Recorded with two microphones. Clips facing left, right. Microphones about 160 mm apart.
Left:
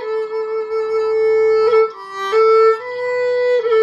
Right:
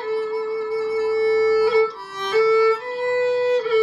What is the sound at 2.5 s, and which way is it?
Violin, 40° left (ahead or behind).